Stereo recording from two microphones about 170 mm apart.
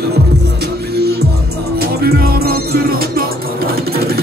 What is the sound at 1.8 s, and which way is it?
Music, 65° right (ahead or behind).